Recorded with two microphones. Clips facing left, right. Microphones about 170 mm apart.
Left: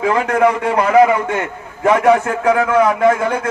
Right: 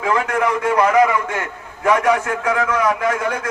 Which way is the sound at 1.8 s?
30° left (ahead or behind).